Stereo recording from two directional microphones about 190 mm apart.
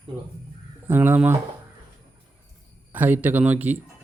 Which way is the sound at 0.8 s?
10° right (ahead or behind).